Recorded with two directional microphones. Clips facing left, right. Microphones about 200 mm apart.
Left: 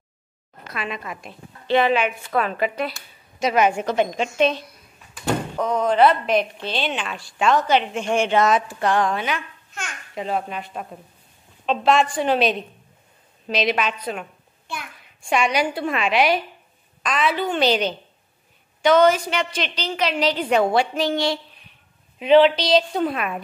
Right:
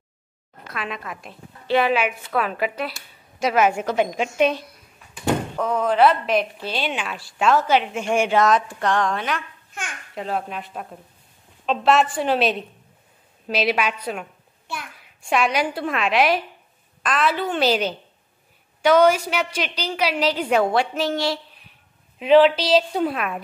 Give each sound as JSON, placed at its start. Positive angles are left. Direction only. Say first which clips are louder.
{"t": 0.7, "sound": "a woman's voice", "louder": "left 1 dB", "side_deg": 0}